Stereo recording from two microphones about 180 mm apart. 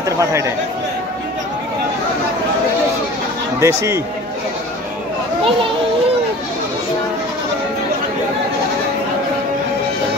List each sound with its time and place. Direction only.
0.2 s speech: 15° right (ahead or behind)
3.6 s speech: 15° right (ahead or behind)